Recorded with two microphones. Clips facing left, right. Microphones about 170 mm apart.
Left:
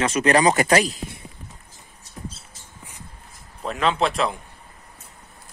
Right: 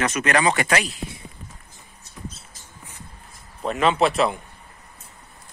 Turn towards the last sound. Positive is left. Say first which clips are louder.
# right 2 dB
turn(degrees=-5)  # may be behind; listen again after turning